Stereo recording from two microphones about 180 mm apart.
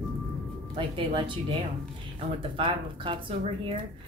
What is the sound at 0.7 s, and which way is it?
Speech, 30° right (ahead or behind).